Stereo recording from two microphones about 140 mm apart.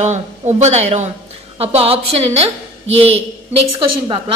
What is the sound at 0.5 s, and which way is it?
A woman's voice, 50° right (ahead or behind).